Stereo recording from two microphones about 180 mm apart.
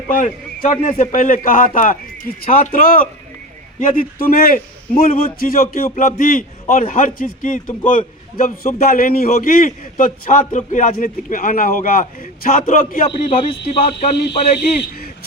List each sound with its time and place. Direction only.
0.7 s a man's voice: 45° left (ahead or behind)
13.1 s speech: 30° left (ahead or behind)
14.6 s a man's voice: 55° left (ahead or behind)